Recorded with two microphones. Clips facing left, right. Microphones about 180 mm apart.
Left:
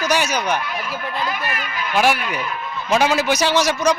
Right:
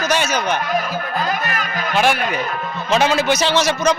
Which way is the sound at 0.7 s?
45° right (ahead or behind).